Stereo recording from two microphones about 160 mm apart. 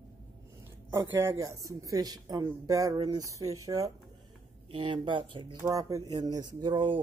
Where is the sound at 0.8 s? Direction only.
20° right (ahead or behind).